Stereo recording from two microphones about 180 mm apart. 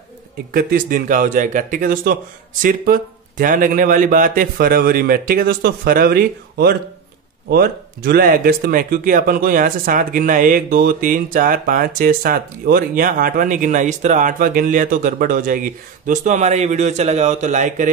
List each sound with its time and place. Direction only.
0.5 s speech: 55° right (ahead or behind)